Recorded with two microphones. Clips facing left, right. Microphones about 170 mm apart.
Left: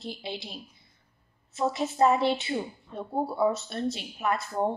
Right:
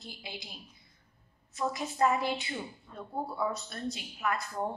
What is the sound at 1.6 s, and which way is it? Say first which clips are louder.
A woman's voice: left 5 dB; 25° left (ahead or behind).